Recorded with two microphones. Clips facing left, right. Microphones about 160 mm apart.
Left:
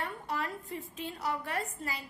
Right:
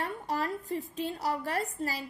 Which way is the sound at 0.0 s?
35° right (ahead or behind).